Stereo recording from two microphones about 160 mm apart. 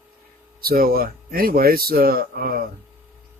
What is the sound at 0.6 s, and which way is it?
Speech, 70° right (ahead or behind).